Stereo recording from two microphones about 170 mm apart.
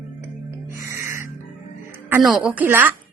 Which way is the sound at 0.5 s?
15° right (ahead or behind).